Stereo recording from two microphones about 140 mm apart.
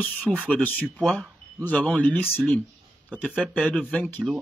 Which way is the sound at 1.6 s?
10° left (ahead or behind).